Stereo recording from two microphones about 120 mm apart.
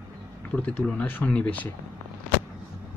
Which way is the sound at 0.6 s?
10° left (ahead or behind).